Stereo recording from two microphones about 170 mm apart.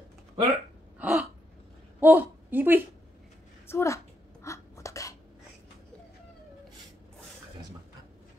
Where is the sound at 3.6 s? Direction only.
15° left (ahead or behind).